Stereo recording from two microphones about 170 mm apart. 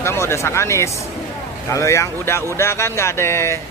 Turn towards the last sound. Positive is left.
turn(degrees=15)  # may be behind; listen again after turning